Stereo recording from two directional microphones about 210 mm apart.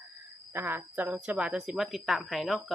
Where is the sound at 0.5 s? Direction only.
10° right (ahead or behind).